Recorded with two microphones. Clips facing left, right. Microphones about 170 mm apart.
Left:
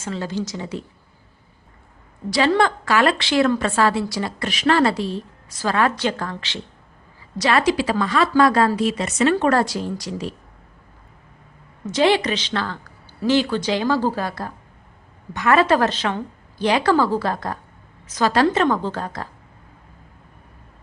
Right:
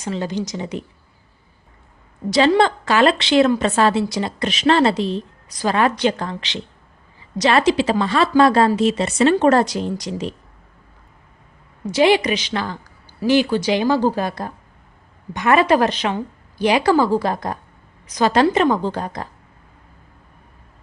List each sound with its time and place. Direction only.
0.0 s a woman's voice: 20° right (ahead or behind)
2.6 s a woman's voice: 25° right (ahead or behind)
11.9 s a woman's voice: 10° right (ahead or behind)